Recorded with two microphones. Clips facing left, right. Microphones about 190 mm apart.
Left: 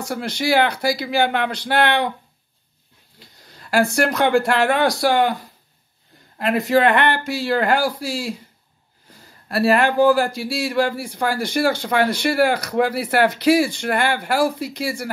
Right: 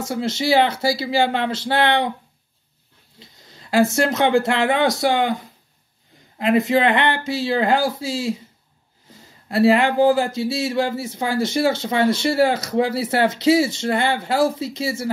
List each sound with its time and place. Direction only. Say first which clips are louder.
0.0 s speech: right 1 dB; 20° right (ahead or behind)
3.2 s speech: even; 20° right (ahead or behind)